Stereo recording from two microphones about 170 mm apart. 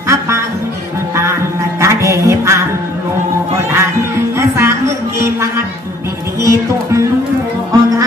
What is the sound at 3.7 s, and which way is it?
Music, 15° right (ahead or behind).